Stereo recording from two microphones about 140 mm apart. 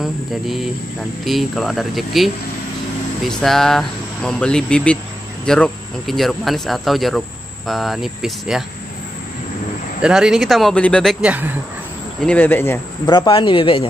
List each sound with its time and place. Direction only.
0.0 s speech: centre (ahead or behind)
10.0 s speech: 5° right (ahead or behind)
11.2 s speech: 10° right (ahead or behind)
12.2 s speech: 10° left (ahead or behind)
13.0 s speech: 30° left (ahead or behind)